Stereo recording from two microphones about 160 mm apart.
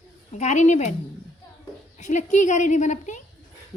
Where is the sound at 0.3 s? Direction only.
45° left (ahead or behind).